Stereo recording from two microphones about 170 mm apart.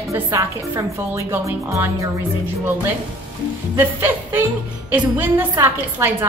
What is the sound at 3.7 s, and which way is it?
A woman's voice, 15° right (ahead or behind).